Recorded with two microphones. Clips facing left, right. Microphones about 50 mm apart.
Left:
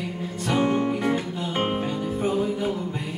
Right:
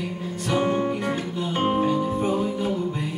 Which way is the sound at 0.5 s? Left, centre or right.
Left.